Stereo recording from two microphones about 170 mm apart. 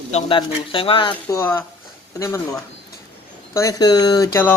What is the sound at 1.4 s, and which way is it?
Speech, 15° left (ahead or behind).